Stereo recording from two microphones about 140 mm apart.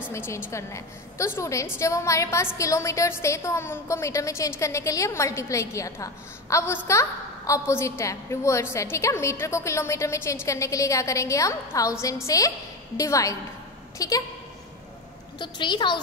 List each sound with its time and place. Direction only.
0.1 s a woman's voice: 20° left (ahead or behind)
15.3 s a woman's voice: 35° left (ahead or behind)